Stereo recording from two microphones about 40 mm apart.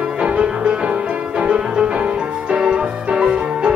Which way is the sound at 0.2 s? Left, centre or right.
Right.